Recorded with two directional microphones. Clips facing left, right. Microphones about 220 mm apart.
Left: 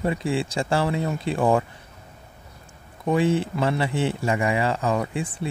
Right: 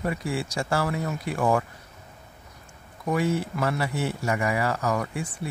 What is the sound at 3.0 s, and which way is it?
Speech, 25° left (ahead or behind).